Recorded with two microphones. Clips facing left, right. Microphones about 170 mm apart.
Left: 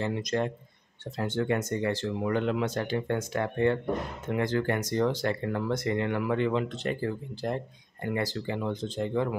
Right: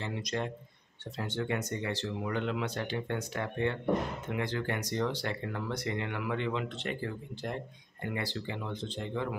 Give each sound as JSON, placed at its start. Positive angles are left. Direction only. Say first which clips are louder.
{"t": 0.0, "sound": "speech", "louder": "left 6 dB", "side_deg": 45}